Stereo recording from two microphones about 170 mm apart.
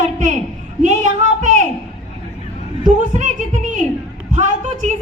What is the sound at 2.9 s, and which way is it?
Music, 45° right (ahead or behind).